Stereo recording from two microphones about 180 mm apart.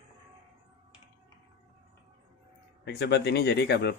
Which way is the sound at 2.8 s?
70° left (ahead or behind).